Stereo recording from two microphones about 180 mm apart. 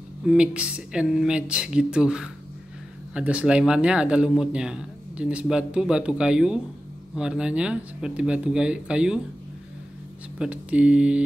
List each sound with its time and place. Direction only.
0.3 s speech: 5° right (ahead or behind)
10.4 s speech: 5° right (ahead or behind)